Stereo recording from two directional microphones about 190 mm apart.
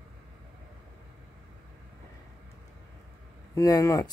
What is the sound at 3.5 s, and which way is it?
Speech, 20° left (ahead or behind).